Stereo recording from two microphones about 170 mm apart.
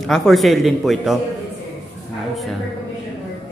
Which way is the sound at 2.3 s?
Centre (ahead or behind).